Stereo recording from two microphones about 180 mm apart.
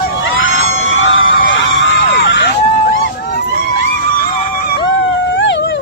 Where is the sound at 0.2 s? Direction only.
90° left.